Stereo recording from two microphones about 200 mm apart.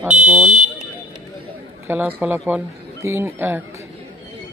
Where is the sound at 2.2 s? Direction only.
10° right (ahead or behind).